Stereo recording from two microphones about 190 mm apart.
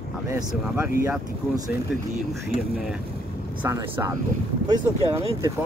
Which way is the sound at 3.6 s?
15° right (ahead or behind).